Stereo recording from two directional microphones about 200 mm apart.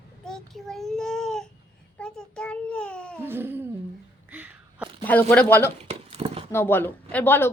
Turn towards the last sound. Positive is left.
turn(degrees=10)  # may be behind; listen again after turning